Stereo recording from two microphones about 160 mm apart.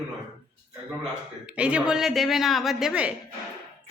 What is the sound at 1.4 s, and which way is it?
A woman's voice, 5° right (ahead or behind).